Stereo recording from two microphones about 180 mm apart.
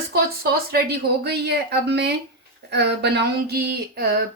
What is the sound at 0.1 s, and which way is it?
Speech, 60° right (ahead or behind).